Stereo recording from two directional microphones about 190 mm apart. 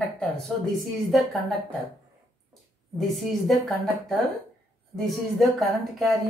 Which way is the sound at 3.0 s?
Centre (ahead or behind).